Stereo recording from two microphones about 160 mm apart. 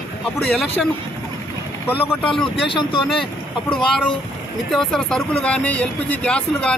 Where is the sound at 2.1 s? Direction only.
5° left (ahead or behind).